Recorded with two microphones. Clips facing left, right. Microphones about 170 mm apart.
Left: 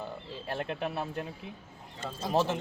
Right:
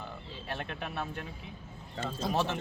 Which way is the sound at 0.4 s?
35° left (ahead or behind).